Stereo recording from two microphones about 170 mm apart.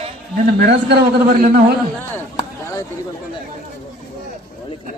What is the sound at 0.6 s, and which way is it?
Speech, 75° right (ahead or behind).